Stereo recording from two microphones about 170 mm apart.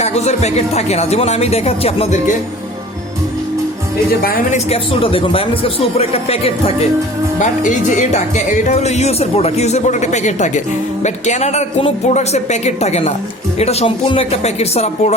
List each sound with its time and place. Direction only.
0.0 s speech: 40° left (ahead or behind)
4.5 s speech: 35° left (ahead or behind)